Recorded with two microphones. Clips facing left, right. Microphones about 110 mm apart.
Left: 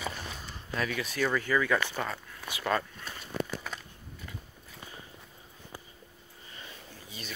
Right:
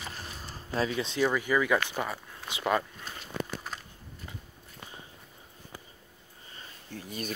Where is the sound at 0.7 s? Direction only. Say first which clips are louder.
Right 3 dB; 25° right (ahead or behind).